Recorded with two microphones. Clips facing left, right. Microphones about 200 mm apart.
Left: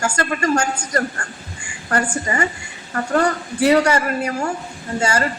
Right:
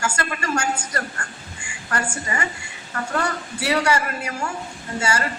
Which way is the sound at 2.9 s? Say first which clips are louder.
Left 7 dB; 35° left (ahead or behind).